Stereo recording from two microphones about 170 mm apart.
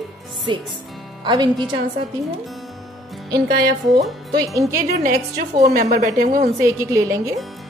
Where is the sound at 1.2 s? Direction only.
25° right (ahead or behind).